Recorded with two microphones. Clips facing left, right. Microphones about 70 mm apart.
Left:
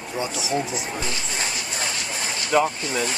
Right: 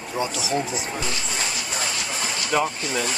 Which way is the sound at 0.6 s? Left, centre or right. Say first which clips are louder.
Even; centre.